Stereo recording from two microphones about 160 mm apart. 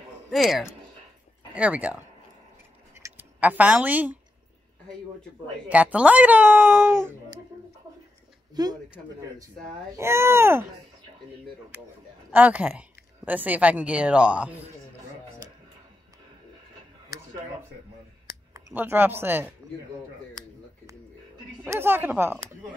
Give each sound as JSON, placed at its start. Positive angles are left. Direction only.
{"t": 0.3, "sound": "speech", "side_deg": 0}
{"t": 3.0, "sound": "speech", "side_deg": -10}
{"t": 5.7, "sound": "a woman's voice", "side_deg": -10}
{"t": 8.6, "sound": "speech", "side_deg": -25}
{"t": 9.9, "sound": "a woman's voice", "side_deg": -15}
{"t": 12.3, "sound": "a woman's voice", "side_deg": -10}
{"t": 18.5, "sound": "speech", "side_deg": -15}
{"t": 21.6, "sound": "a woman's voice", "side_deg": -15}